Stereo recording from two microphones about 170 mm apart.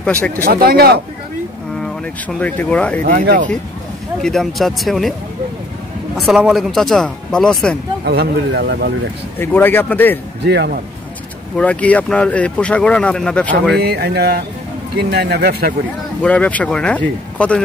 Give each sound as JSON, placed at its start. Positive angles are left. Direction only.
{"t": 0.0, "sound": "speech", "side_deg": 10}
{"t": 0.4, "sound": "speech", "side_deg": -60}
{"t": 1.8, "sound": "speech", "side_deg": 5}
{"t": 3.0, "sound": "speech", "side_deg": -50}
{"t": 4.2, "sound": "a man's voice", "side_deg": 0}
{"t": 6.1, "sound": "a man's voice", "side_deg": -5}
{"t": 8.0, "sound": "speech", "side_deg": -70}
{"t": 9.4, "sound": "speech", "side_deg": 10}
{"t": 10.4, "sound": "speech", "side_deg": -80}
{"t": 11.5, "sound": "speech", "side_deg": 5}
{"t": 13.7, "sound": "speech", "side_deg": -70}
{"t": 16.2, "sound": "speech", "side_deg": 10}